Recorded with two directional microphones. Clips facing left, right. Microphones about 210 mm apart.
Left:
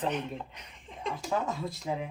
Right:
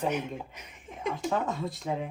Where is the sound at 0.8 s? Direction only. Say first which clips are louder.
Right 4 dB; centre (ahead or behind).